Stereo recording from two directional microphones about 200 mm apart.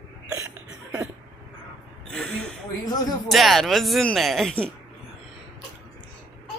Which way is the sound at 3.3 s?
Centre (ahead or behind).